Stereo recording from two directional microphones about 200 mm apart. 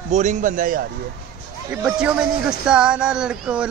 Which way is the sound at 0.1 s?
35° right (ahead or behind).